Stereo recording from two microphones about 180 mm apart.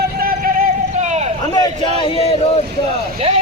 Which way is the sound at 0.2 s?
55° right (ahead or behind).